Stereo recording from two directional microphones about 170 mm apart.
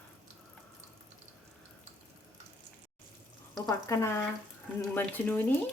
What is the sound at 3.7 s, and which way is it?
Speech, 15° left (ahead or behind).